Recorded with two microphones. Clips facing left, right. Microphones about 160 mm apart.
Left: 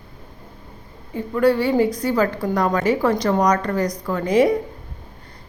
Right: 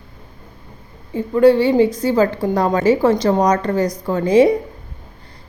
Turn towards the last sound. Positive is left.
turn(degrees=-25)  # may be behind; listen again after turning